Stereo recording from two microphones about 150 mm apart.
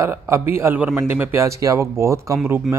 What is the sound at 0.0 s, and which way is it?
Speech, 15° right (ahead or behind).